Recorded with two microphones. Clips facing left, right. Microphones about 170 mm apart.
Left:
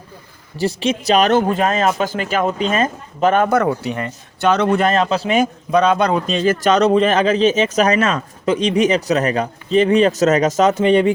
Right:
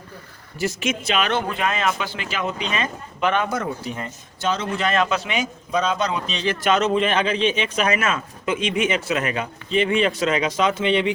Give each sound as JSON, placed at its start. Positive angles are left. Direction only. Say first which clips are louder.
{"t": 0.5, "sound": "speech", "louder": "left 5 dB", "side_deg": 30}
{"t": 3.5, "sound": "speech", "louder": "left 9 dB", "side_deg": 70}
{"t": 4.9, "sound": "a man's voice", "louder": "left 5 dB", "side_deg": 35}
{"t": 5.4, "sound": "a man's voice", "louder": "left 8 dB", "side_deg": 60}